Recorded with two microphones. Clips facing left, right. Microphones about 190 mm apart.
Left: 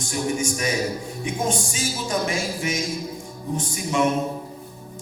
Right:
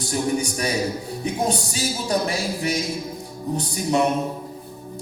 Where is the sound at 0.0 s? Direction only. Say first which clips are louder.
Right 2 dB; 35° right (ahead or behind).